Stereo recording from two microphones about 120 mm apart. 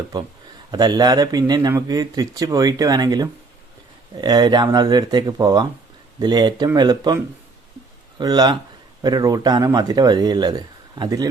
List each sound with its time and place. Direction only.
0.7 s speech: 35° right (ahead or behind)
8.2 s speech: 35° right (ahead or behind)